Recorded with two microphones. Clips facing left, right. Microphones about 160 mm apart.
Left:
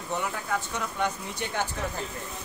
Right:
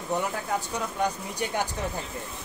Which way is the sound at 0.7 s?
35° right (ahead or behind).